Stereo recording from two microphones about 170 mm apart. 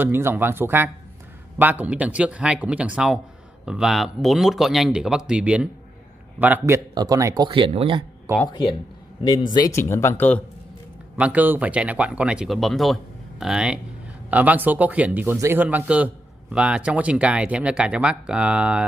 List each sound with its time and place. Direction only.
0.0 s speech: 10° right (ahead or behind)
7.4 s speech: 30° right (ahead or behind)
9.2 s a man's voice: 25° left (ahead or behind)
11.1 s speech: 10° right (ahead or behind)